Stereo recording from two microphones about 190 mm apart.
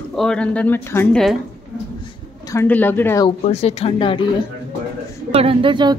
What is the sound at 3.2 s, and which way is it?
Speech, 35° left (ahead or behind).